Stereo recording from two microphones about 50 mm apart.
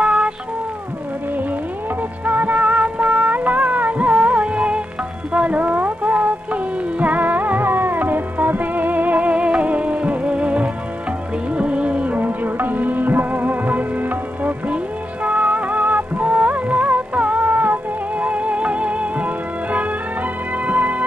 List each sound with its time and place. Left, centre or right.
0.0 s music: centre
2.2 s music: right